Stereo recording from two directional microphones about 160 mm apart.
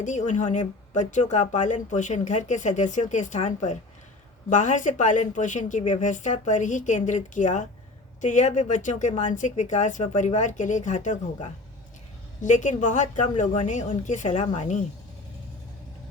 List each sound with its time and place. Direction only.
0.0 s speech: 50° left (ahead or behind)
12.4 s speech: 50° left (ahead or behind)